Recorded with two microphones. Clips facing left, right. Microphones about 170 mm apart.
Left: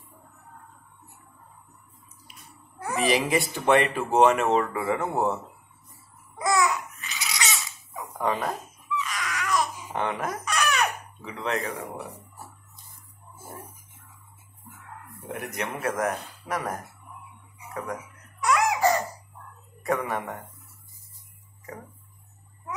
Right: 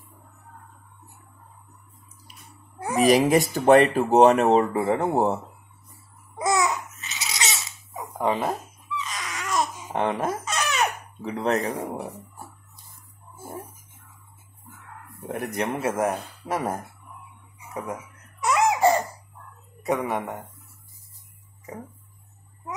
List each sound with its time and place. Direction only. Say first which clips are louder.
3.0 s speech: right 6 dB; 40° right (ahead or behind)
6.3 s babbling: right 1 dB; 20° right (ahead or behind)
9.9 s a sound: right 4 dB; 30° right (ahead or behind)
11.2 s speech: right 5 dB; 40° right (ahead or behind)
15.3 s speech: right 5 dB; 35° right (ahead or behind)
15.8 s speech: even; 25° right (ahead or behind)
18.4 s laughter: right 2 dB; 25° right (ahead or behind)
19.8 s speech: right 2 dB; 20° right (ahead or behind)